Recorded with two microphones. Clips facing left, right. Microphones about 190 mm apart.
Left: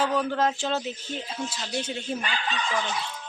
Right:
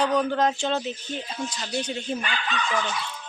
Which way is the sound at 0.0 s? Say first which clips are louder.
Right 2 dB; 5° left (ahead or behind).